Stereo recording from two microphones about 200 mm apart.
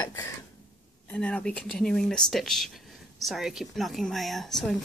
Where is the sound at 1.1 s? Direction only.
5° left (ahead or behind).